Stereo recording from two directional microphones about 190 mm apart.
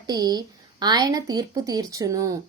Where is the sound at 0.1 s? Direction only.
20° right (ahead or behind).